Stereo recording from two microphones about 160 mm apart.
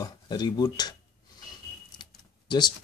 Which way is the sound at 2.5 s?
25° left (ahead or behind).